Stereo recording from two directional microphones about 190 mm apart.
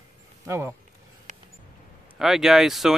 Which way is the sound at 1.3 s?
40° right (ahead or behind).